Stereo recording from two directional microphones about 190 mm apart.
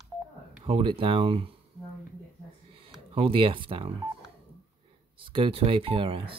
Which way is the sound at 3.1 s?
30° right (ahead or behind).